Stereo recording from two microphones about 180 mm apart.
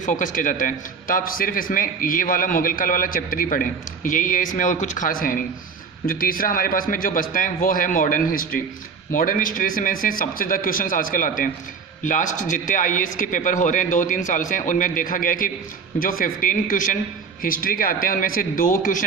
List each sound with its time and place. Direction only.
0.0 s a man's voice: 45° left (ahead or behind)